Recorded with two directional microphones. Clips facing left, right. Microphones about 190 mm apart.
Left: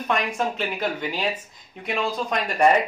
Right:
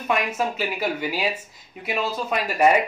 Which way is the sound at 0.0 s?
5° right (ahead or behind).